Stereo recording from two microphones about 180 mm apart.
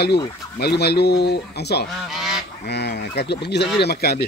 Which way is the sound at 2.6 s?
65° left (ahead or behind).